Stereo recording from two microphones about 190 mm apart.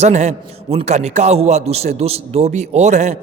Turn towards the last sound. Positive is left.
turn(degrees=-35)  # may be behind; listen again after turning